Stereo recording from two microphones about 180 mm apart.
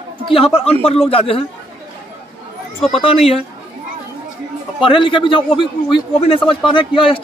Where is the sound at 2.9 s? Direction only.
30° left (ahead or behind).